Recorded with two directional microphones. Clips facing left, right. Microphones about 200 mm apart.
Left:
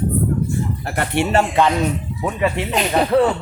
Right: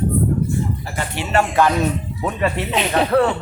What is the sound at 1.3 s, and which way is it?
Speech, 25° left (ahead or behind).